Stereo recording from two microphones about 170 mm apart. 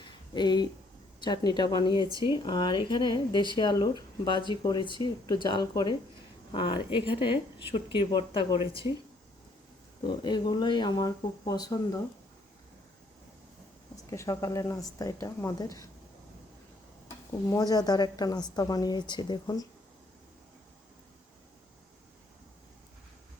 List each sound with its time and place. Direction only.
0.3 s speech: 25° left (ahead or behind)
10.1 s speech: 25° left (ahead or behind)
13.9 s speech: 20° left (ahead or behind)
17.5 s speech: 20° left (ahead or behind)